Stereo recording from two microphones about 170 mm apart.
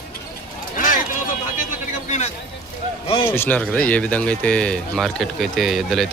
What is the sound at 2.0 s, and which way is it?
Vehicle, 45° left (ahead or behind).